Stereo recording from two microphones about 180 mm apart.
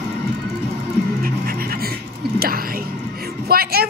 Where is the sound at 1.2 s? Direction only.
55° right (ahead or behind).